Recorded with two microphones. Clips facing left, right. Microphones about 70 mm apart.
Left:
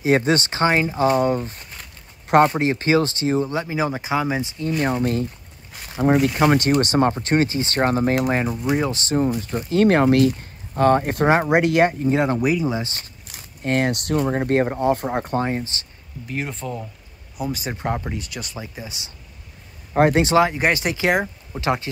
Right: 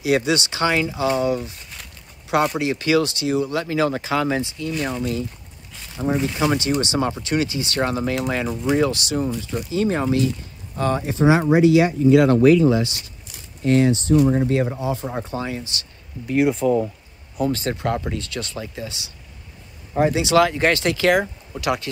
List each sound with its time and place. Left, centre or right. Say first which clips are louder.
0.0 s speech: left 1 dB; left
3.6 s speech: right 2 dB; centre
6.0 s speech: left 5 dB; left
6.4 s speech: left 3 dB; left
8.5 s speech: right 2 dB; centre
8.8 s speech: left 1 dB; left
9.7 s speech: left 6 dB; left
12.2 s speech: right 7 dB; centre
12.8 s speech: right 4 dB; left
16.3 s speech: right 11 dB; centre
17.4 s speech: right 5 dB; centre
20.0 s speech: left 3 dB; left
20.3 s speech: right 1 dB; left